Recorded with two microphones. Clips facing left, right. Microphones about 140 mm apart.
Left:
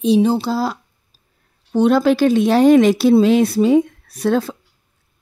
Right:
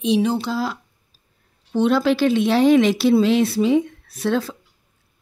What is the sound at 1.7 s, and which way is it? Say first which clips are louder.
A woman's voice: left 4 dB; 45° left (ahead or behind).